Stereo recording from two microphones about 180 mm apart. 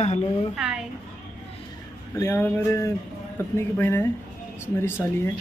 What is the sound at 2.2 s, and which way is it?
Speech, 15° left (ahead or behind).